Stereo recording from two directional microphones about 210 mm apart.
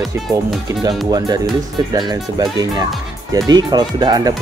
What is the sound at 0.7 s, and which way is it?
Speech, 20° right (ahead or behind).